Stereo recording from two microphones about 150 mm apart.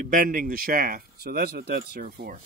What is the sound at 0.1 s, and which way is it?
Speech, 65° right (ahead or behind).